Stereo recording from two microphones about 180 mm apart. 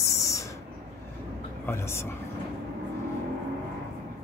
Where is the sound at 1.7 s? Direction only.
15° left (ahead or behind).